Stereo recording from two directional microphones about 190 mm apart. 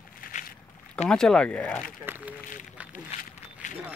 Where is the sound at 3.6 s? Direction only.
40° left (ahead or behind).